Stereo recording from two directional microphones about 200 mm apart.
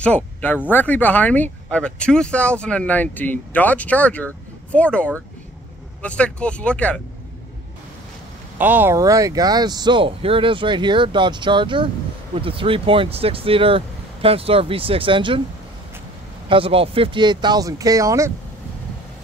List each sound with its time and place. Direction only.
0.0 s speech: 5° left (ahead or behind)
8.5 s speech: 10° right (ahead or behind); by 15.4 s 25° right (ahead or behind)
16.4 s speech: 25° right (ahead or behind)